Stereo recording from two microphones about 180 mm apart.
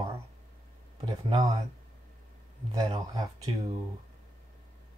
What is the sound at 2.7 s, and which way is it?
Speech, 20° right (ahead or behind).